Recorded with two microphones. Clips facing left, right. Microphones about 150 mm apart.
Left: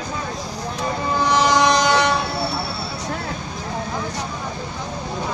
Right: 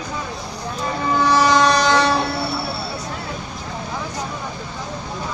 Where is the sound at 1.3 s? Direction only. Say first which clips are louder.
Right 1 dB; 15° left (ahead or behind).